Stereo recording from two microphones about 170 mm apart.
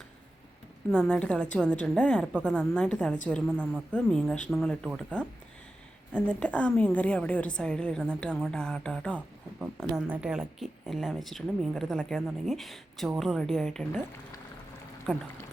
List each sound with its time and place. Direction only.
0.9 s a woman's voice: 5° left (ahead or behind)
9.6 s speech: 5° right (ahead or behind)
15.1 s speech: 5° right (ahead or behind)